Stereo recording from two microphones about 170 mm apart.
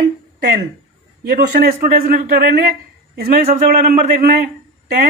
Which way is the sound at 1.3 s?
65° right (ahead or behind).